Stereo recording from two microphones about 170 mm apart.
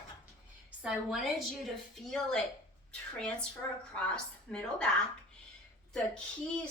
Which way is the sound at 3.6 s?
15° left (ahead or behind).